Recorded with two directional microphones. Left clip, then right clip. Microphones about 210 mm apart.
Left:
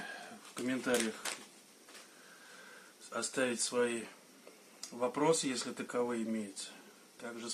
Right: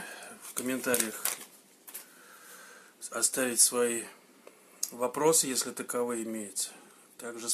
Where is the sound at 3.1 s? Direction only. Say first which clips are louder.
Right 3 dB; 40° right (ahead or behind).